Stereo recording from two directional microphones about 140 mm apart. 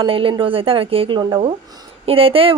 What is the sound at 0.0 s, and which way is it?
Speech, 40° right (ahead or behind).